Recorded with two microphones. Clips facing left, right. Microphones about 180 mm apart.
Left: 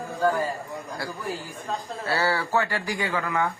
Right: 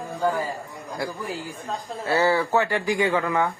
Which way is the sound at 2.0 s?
20° right (ahead or behind).